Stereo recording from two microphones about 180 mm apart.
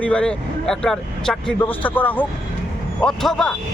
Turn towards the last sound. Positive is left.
turn(degrees=5)  # may be behind; listen again after turning